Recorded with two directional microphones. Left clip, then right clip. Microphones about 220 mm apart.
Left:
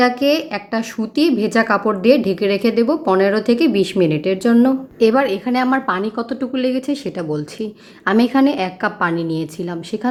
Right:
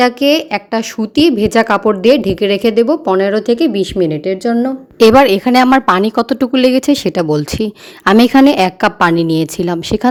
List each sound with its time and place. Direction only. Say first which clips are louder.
0.0 s speech: right 4 dB; 35° right (ahead or behind); by 4.7 s 15° right (ahead or behind)
4.9 s a woman's voice: right 10 dB; 45° right (ahead or behind)